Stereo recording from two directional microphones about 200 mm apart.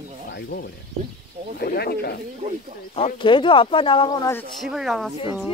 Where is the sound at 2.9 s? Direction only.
25° left (ahead or behind).